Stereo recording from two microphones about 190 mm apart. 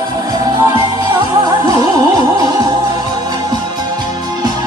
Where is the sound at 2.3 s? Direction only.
20° right (ahead or behind).